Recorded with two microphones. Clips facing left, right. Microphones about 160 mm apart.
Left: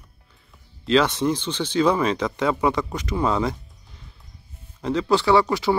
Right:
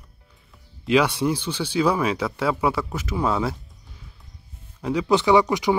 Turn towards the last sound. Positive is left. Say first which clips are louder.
# right 1 dB
turn(degrees=-15)  # may be behind; listen again after turning